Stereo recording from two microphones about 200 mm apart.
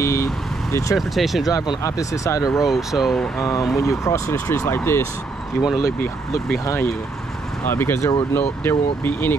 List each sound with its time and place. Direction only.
0.0 s vehicle: 15° left (ahead or behind)
0.9 s speech: centre (ahead or behind)
1.5 s speech: 15° left (ahead or behind)
2.6 s speech: centre (ahead or behind)
3.7 s speech: 15° left (ahead or behind)
7.6 s speech: 10° left (ahead or behind)